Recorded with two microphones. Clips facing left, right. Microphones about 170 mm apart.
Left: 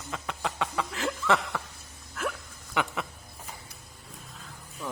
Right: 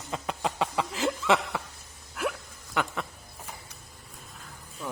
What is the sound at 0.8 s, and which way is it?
Chuckle, 20° right (ahead or behind).